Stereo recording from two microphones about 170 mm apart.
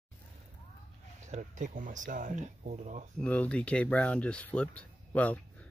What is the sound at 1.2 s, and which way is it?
Speech, 45° right (ahead or behind).